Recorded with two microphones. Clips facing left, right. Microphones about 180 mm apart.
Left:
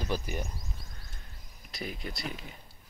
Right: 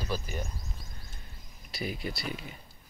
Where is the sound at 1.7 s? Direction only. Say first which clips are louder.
Right 3 dB; 5° right (ahead or behind).